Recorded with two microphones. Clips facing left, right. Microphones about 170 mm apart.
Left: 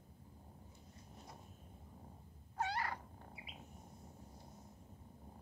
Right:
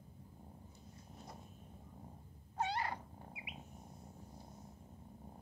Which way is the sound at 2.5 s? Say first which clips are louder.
Right 2 dB; 25° right (ahead or behind).